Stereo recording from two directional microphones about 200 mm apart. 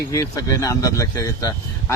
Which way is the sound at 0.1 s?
15° left (ahead or behind).